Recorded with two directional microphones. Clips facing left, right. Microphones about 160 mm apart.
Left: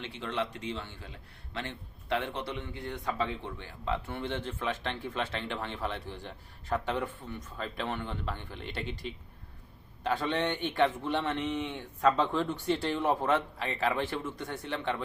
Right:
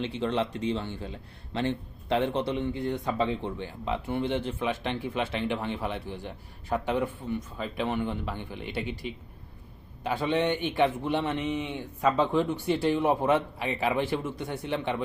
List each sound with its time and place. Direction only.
0.0 s speech: 25° right (ahead or behind)